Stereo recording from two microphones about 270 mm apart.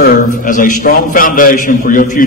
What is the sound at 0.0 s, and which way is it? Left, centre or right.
A man's voice, left.